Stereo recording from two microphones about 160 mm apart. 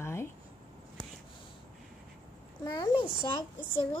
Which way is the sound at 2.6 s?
25° left (ahead or behind).